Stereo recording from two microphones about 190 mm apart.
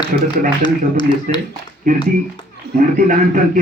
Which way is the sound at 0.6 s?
25° left (ahead or behind).